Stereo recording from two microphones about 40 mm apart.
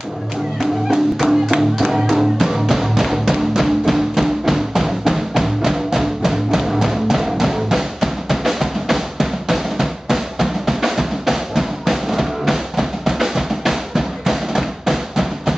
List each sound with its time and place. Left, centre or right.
0.6 s music: centre